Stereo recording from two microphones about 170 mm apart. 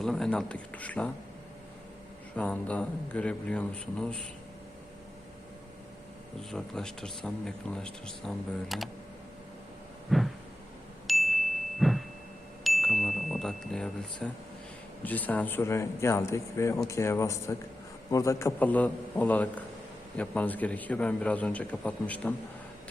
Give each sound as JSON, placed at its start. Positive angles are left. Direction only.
{"t": 0.0, "sound": "speech", "side_deg": 5}
{"t": 2.3, "sound": "speech", "side_deg": 5}
{"t": 6.5, "sound": "speech", "side_deg": 5}
{"t": 10.1, "sound": "a sound", "side_deg": 0}
{"t": 11.0, "sound": "ding", "side_deg": 0}
{"t": 12.6, "sound": "a sound", "side_deg": 0}
{"t": 15.0, "sound": "speech", "side_deg": 10}